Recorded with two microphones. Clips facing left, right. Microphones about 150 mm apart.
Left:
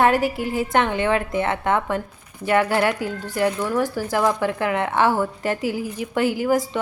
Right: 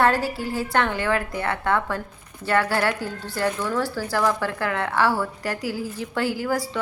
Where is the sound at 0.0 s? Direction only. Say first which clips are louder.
Left 3 dB; 15° left (ahead or behind).